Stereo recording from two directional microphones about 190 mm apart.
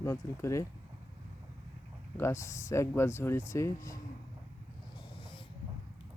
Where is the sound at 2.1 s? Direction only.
15° left (ahead or behind).